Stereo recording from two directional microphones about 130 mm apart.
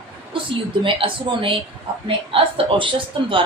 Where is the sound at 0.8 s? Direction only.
40° right (ahead or behind).